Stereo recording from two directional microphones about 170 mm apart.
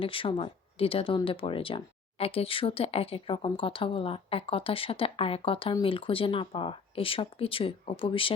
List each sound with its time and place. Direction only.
0.0 s speech: 30° left (ahead or behind)